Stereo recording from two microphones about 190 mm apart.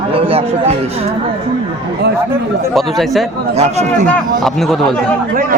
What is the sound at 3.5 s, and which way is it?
Speech, 35° right (ahead or behind).